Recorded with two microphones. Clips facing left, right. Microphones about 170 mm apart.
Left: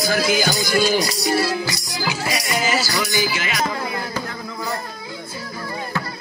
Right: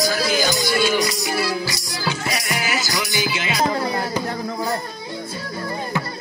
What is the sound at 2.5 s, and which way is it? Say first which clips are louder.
Music: left 5 dB; 10° right (ahead or behind).